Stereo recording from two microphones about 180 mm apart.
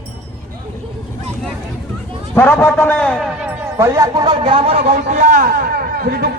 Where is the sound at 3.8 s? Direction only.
20° right (ahead or behind).